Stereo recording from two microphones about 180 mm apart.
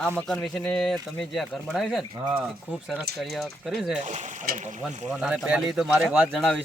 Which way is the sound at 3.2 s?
Centre (ahead or behind).